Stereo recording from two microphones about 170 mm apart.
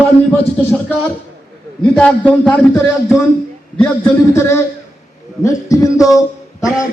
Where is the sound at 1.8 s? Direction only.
5° left (ahead or behind).